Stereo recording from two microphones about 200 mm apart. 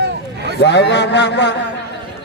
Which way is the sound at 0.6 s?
60° left (ahead or behind).